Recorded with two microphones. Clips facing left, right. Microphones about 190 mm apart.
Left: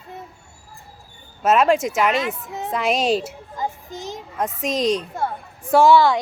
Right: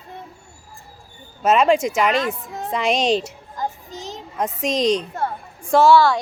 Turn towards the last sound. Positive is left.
turn(degrees=20)  # may be behind; listen again after turning